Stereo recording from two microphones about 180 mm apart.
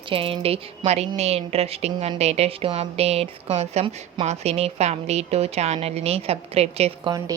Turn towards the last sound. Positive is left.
turn(degrees=-20)  # may be behind; listen again after turning